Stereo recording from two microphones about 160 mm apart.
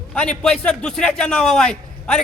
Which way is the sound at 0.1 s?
5° left (ahead or behind).